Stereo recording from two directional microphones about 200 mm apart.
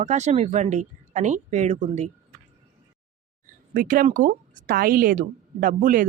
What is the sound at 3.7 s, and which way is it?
Speech, 45° right (ahead or behind).